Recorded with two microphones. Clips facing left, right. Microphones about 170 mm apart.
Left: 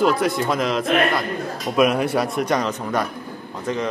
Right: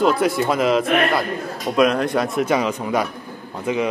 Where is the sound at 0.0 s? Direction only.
Centre (ahead or behind).